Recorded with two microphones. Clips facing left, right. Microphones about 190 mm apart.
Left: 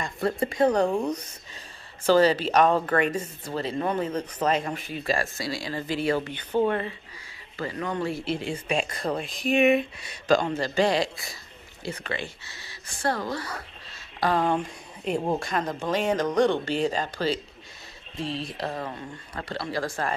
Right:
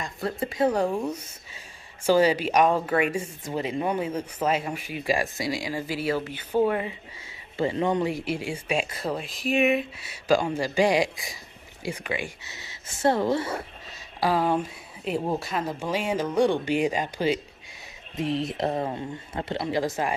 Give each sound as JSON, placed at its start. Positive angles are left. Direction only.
{"t": 0.0, "sound": "speech", "side_deg": 0}
{"t": 7.5, "sound": "speech", "side_deg": -25}
{"t": 14.2, "sound": "speech", "side_deg": -5}